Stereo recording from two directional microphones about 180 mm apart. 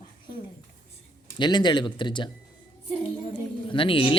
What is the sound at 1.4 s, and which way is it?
Speech, 25° left (ahead or behind).